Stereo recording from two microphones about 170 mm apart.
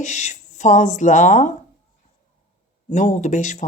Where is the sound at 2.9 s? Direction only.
45° left (ahead or behind).